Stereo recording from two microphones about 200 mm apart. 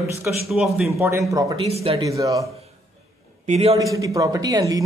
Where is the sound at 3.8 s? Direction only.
15° right (ahead or behind).